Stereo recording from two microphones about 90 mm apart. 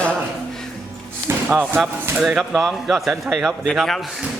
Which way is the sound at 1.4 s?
20° right (ahead or behind).